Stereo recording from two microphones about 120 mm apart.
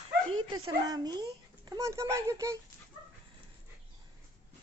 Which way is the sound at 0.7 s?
35° right (ahead or behind).